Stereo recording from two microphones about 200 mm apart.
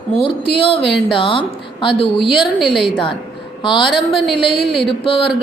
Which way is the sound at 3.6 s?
25° left (ahead or behind).